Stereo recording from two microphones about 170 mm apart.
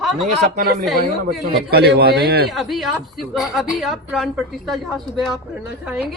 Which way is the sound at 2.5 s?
Centre (ahead or behind).